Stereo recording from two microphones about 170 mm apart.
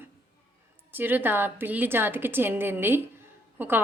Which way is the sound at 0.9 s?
10° right (ahead or behind).